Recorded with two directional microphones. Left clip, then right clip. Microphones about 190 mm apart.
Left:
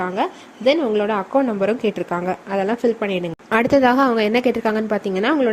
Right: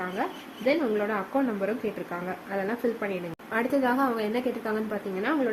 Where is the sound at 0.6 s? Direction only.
40° left (ahead or behind).